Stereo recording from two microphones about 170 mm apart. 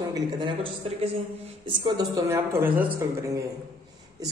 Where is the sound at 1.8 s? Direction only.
25° right (ahead or behind).